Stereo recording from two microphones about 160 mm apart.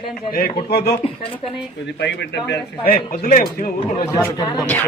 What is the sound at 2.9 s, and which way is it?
A man's voice, 65° left (ahead or behind).